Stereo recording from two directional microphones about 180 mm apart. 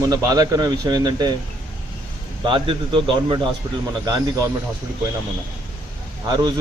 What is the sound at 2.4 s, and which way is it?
A man's voice, 25° right (ahead or behind).